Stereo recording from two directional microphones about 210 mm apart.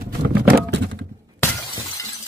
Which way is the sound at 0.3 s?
50° right (ahead or behind).